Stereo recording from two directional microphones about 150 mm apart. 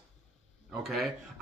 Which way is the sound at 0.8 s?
Centre (ahead or behind).